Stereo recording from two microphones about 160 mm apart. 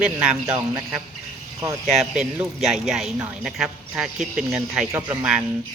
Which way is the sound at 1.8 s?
Centre (ahead or behind).